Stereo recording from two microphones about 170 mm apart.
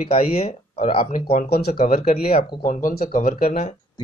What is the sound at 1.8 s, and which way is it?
Speech, 40° left (ahead or behind).